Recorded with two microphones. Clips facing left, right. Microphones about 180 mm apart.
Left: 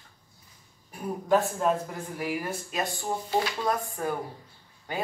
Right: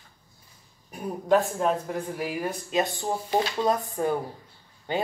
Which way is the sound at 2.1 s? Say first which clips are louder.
Right 1 dB; 20° right (ahead or behind).